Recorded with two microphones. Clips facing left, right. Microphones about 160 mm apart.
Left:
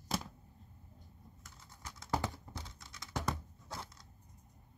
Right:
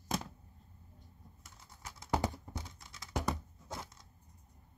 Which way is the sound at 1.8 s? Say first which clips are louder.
Right 3 dB; 15° right (ahead or behind).